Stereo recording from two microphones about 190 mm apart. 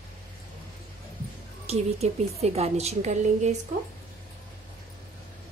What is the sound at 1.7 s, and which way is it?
A woman's voice, 35° right (ahead or behind).